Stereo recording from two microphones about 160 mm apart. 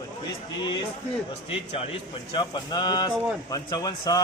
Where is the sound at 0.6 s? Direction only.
25° left (ahead or behind).